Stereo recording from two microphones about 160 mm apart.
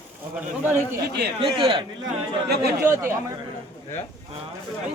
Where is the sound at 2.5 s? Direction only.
85° right.